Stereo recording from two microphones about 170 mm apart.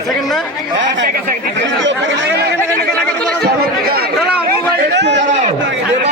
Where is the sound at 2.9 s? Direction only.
5° left (ahead or behind).